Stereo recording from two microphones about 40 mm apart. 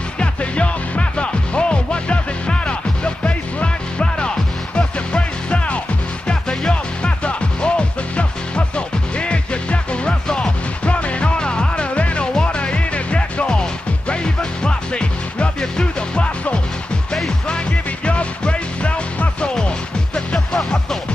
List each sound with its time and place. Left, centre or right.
0.2 s music: left
10.2 s music: centre
10.9 s music: left
12.4 s music: left
12.7 s music: left
17.5 s music: left
20.3 s music: centre